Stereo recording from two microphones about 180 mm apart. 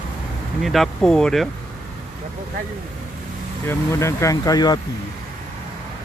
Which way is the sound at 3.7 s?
15° left (ahead or behind).